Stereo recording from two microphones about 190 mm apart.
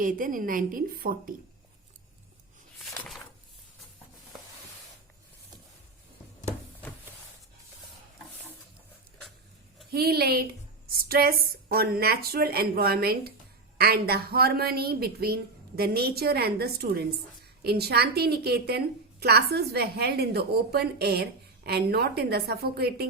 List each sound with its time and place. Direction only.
0.0 s speech: 45° right (ahead or behind)
9.9 s a woman's voice: 55° right (ahead or behind)